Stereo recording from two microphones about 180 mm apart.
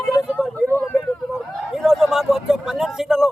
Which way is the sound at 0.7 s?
10° left (ahead or behind).